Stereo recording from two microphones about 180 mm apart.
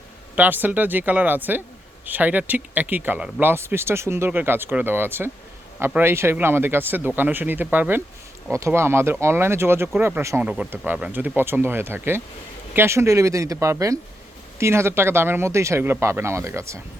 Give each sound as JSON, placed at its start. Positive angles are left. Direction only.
{"t": 0.3, "sound": "speech", "side_deg": -10}